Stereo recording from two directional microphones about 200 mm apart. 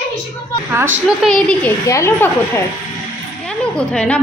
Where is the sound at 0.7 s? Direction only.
10° right (ahead or behind).